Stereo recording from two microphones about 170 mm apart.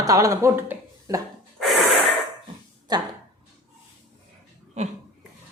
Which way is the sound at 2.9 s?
25° right (ahead or behind).